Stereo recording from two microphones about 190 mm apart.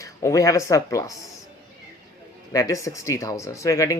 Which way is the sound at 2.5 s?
15° left (ahead or behind).